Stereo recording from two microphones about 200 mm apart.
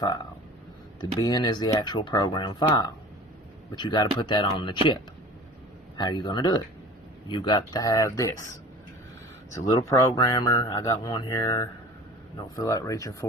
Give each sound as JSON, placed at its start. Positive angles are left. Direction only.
{"t": 1.2, "sound": "speech", "side_deg": 20}
{"t": 6.0, "sound": "speech", "side_deg": 20}
{"t": 9.6, "sound": "speech", "side_deg": 20}